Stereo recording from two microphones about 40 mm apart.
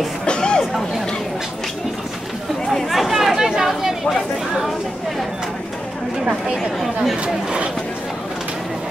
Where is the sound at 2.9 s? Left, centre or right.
Centre.